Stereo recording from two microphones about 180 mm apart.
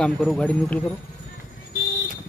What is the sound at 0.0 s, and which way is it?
Speech, 5° left (ahead or behind).